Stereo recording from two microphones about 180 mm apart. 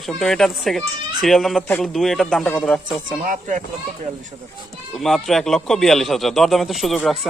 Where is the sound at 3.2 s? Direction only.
45° right (ahead or behind).